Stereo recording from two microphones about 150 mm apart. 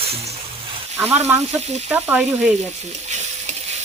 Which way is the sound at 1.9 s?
10° right (ahead or behind).